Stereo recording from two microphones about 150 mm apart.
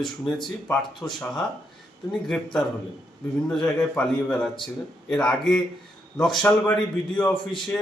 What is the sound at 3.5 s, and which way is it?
A man's voice, 5° left (ahead or behind).